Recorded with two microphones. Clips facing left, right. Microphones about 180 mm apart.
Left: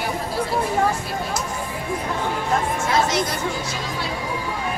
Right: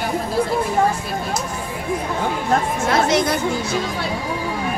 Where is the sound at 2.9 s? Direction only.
60° right (ahead or behind).